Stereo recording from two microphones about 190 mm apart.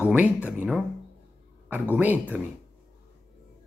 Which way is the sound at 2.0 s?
10° right (ahead or behind).